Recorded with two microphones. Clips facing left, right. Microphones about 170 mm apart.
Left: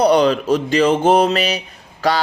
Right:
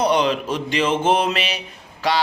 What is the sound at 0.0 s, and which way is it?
A man's voice, 40° left (ahead or behind).